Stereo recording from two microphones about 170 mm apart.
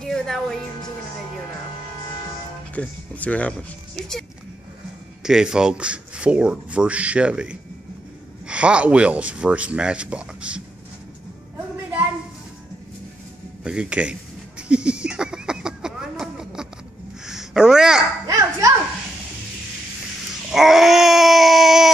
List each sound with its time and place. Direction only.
0.0 s music: centre (ahead or behind)
2.7 s speech: 10° left (ahead or behind)
5.2 s speech: 5° right (ahead or behind)
13.7 s speech: 5° right (ahead or behind)
14.7 s a sound: 5° right (ahead or behind)
18.2 s a sound: 20° right (ahead or behind)
20.5 s speech: centre (ahead or behind)